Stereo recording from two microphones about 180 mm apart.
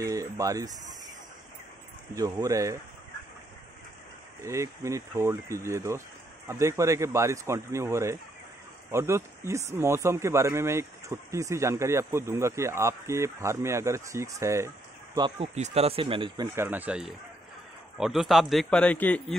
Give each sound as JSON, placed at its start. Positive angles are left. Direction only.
{"t": 0.0, "sound": "speech", "side_deg": -20}
{"t": 2.1, "sound": "speech", "side_deg": -20}
{"t": 4.4, "sound": "speech", "side_deg": -15}
{"t": 15.1, "sound": "speech", "side_deg": -30}
{"t": 16.5, "sound": "a man's voice", "side_deg": -10}